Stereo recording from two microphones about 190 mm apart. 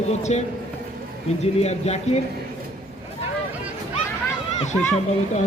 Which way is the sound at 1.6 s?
35° left (ahead or behind).